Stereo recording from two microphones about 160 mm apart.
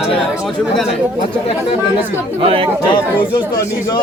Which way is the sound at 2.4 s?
35° right (ahead or behind).